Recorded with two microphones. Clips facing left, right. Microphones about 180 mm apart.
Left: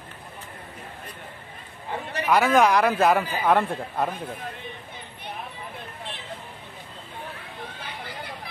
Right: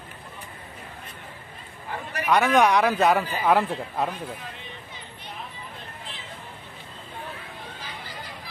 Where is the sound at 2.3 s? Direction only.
Centre (ahead or behind).